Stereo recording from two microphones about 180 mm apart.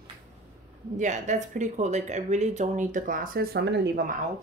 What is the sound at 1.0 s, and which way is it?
Speech, 40° right (ahead or behind).